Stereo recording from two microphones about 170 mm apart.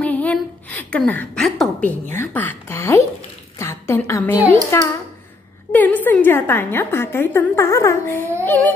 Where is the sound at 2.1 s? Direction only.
10° left (ahead or behind).